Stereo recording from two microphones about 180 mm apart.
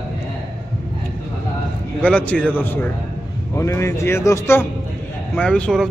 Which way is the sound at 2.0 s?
10° left (ahead or behind).